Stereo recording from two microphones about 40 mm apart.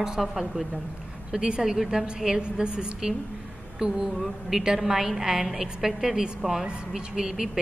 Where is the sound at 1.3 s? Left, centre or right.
Centre.